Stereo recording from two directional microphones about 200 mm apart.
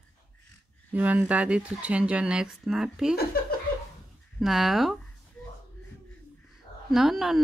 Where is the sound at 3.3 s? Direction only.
50° left (ahead or behind).